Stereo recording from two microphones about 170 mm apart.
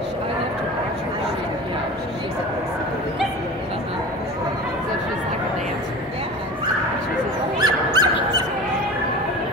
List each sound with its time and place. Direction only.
7.6 s dog: 25° right (ahead or behind)